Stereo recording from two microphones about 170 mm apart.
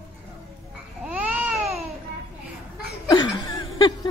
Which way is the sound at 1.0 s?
10° right (ahead or behind).